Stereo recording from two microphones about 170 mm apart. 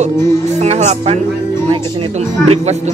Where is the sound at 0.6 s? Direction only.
40° right (ahead or behind).